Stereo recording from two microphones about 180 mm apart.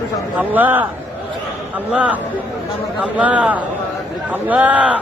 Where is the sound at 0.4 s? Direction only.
10° right (ahead or behind).